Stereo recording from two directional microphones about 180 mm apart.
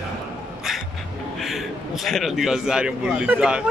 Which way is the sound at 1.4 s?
Centre (ahead or behind).